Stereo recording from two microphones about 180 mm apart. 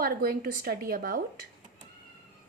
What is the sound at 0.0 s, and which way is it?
A woman's voice, 55° right (ahead or behind).